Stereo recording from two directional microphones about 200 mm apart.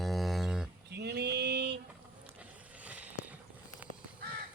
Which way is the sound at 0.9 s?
55° right (ahead or behind).